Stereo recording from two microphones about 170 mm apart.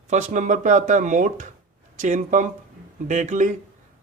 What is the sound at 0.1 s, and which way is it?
Speech, 45° right (ahead or behind).